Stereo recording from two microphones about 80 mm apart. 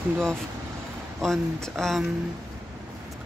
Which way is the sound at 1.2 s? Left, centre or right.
Centre.